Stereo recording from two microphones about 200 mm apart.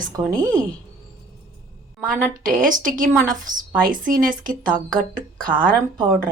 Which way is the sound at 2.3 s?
45° right (ahead or behind).